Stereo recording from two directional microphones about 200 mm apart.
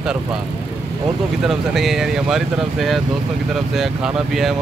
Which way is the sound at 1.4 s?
Centre (ahead or behind).